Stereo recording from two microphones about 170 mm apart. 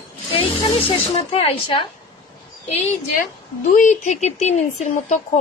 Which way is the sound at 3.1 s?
50° left (ahead or behind).